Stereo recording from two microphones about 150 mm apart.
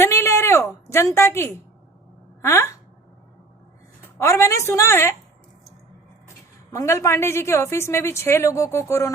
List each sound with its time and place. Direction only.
0.0 s a sound: 15° left (ahead or behind)
0.9 s a woman's voice: 20° left (ahead or behind)
4.0 s a woman's voice: 15° left (ahead or behind)
6.2 s a woman's voice: 20° left (ahead or behind)